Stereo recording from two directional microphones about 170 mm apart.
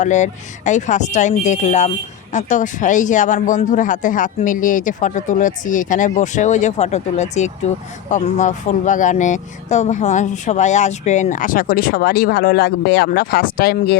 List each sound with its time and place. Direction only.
0.0 s speech: 45° left (ahead or behind); by 14.0 s 65° left (ahead or behind)